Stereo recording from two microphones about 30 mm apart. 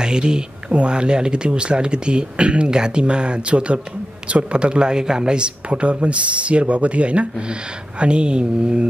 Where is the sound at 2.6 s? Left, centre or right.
Right.